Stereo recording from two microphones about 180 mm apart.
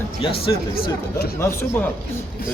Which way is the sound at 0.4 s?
60° left (ahead or behind).